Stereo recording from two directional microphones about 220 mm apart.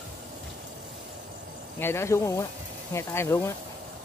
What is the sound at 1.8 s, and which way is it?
Speech, 10° left (ahead or behind).